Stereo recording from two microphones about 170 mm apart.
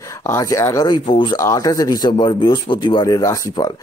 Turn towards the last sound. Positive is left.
turn(degrees=20)  # may be behind; listen again after turning